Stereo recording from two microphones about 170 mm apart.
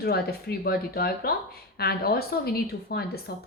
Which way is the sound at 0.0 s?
65° left (ahead or behind).